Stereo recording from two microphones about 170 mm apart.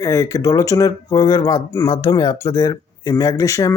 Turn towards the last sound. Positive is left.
turn(degrees=20)  # may be behind; listen again after turning